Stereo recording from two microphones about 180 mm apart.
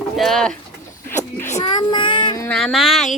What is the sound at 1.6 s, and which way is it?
Child singing, 25° left (ahead or behind).